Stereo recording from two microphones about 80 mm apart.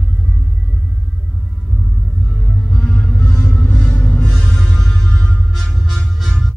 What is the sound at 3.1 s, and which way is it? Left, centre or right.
Music, left.